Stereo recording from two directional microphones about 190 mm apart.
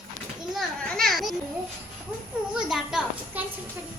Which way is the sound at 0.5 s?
Centre (ahead or behind).